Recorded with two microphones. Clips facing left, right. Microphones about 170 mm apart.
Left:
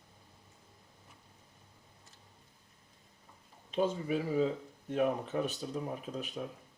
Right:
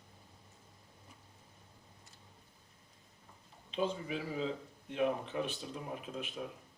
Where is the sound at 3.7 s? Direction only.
45° left (ahead or behind).